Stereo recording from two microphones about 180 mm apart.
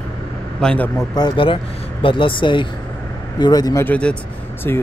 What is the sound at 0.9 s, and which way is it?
Speech, 20° left (ahead or behind).